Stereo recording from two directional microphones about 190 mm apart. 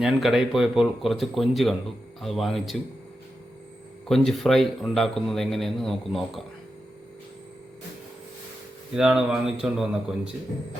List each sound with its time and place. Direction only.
0.0 s speech: centre (ahead or behind)
4.1 s speech: centre (ahead or behind)
9.0 s speech: 5° right (ahead or behind)